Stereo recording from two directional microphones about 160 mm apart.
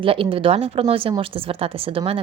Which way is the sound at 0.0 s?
35° right (ahead or behind).